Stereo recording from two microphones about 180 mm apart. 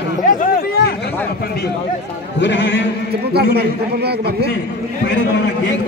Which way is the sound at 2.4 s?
80° left.